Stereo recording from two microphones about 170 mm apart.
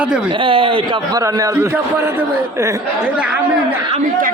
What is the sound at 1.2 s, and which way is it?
A man's voice, 20° right (ahead or behind).